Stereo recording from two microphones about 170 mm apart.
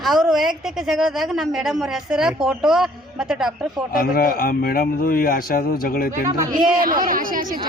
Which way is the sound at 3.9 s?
60° left (ahead or behind).